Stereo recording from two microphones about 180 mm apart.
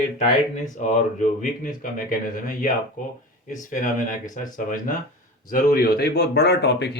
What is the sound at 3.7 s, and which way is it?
Speech, 45° left (ahead or behind).